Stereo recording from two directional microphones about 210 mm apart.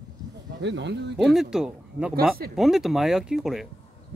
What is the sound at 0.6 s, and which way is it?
Speech, 55° right (ahead or behind).